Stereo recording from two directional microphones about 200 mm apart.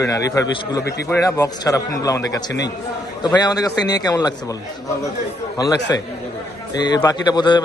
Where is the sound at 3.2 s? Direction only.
20° left (ahead or behind).